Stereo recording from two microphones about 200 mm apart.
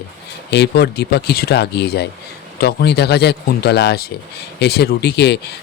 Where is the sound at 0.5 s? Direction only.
55° left (ahead or behind).